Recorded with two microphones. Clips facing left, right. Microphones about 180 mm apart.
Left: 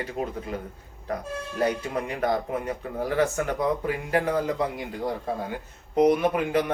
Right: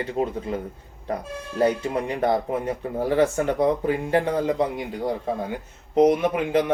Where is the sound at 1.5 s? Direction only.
30° right (ahead or behind).